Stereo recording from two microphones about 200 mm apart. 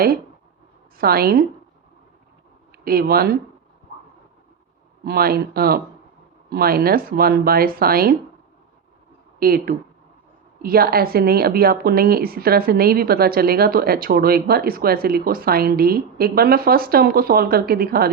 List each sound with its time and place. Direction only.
0.9 s a woman's voice: 50° right (ahead or behind)
2.7 s speech: 50° right (ahead or behind)
5.0 s a woman's voice: 50° right (ahead or behind)
9.4 s a woman's voice: 45° right (ahead or behind)